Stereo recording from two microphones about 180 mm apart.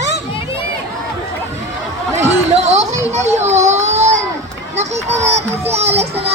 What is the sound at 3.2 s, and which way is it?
Baby cry, 40° right (ahead or behind).